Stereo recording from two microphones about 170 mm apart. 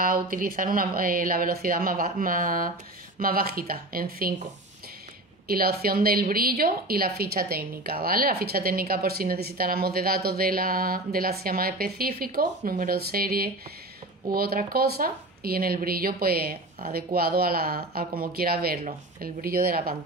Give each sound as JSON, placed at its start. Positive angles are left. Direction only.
{"t": 0.0, "sound": "a woman's voice", "side_deg": -55}
{"t": 5.5, "sound": "a woman's voice", "side_deg": -65}